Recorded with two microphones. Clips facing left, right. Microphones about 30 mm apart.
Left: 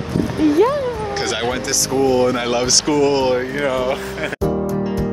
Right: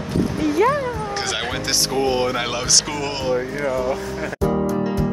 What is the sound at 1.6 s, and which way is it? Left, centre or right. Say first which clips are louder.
Speech: left 2 dB; right.